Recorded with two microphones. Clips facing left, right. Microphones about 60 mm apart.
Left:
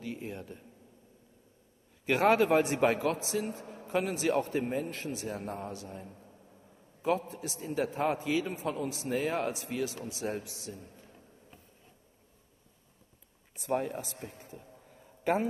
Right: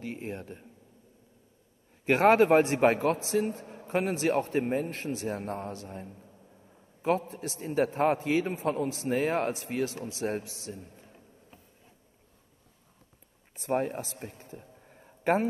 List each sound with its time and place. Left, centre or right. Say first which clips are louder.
0.0 s a man's voice: right 2 dB; right
2.0 s a man's voice: right 4 dB; right
13.6 s a man's voice: right 3 dB; right
14.2 s a sound: right 2 dB; right